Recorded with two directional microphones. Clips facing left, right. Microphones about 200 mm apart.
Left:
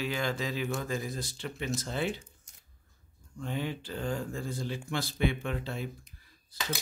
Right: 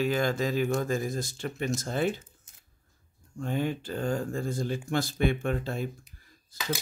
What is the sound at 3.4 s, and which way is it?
Speech, 45° right (ahead or behind).